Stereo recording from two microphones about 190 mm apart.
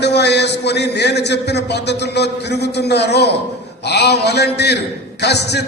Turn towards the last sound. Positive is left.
turn(degrees=60)  # may be behind; listen again after turning